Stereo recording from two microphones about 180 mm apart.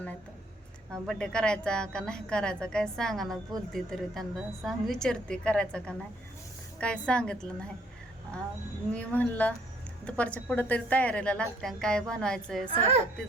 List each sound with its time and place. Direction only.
0.9 s a woman's voice: 5° left (ahead or behind)
8.9 s a woman's voice: 10° left (ahead or behind)
12.6 s a woman's voice: 30° right (ahead or behind)